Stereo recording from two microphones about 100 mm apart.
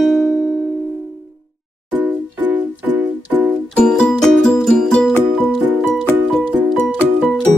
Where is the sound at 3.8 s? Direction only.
10° left (ahead or behind).